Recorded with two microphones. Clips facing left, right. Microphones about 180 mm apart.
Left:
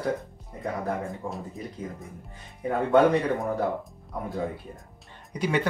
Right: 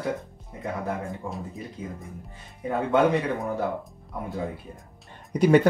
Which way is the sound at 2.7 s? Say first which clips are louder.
Left 1 dB; centre (ahead or behind).